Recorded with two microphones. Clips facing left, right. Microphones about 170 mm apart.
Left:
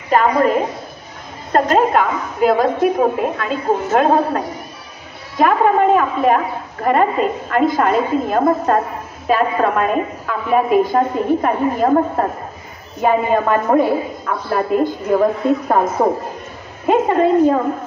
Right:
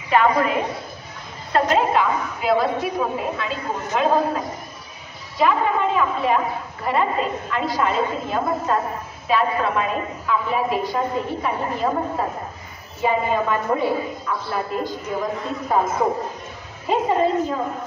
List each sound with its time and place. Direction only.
0.1 s a woman's voice: 40° left (ahead or behind); by 17.6 s 60° left (ahead or behind)